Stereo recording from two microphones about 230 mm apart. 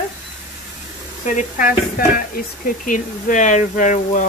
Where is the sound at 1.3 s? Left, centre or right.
Left.